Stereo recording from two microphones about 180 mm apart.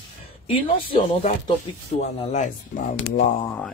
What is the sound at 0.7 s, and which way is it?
Speech, 35° left (ahead or behind).